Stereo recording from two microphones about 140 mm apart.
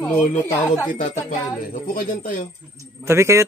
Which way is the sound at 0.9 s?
70° left (ahead or behind).